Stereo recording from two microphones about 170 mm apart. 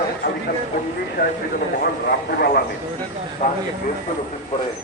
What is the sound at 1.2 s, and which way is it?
Speech, 50° left (ahead or behind).